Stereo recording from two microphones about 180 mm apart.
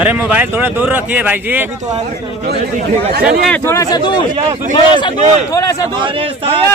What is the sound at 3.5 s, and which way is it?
A man's voice, 15° left (ahead or behind).